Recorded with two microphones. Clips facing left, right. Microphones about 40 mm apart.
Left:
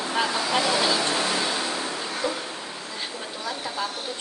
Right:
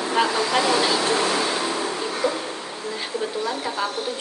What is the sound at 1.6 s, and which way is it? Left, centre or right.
Vehicle, right.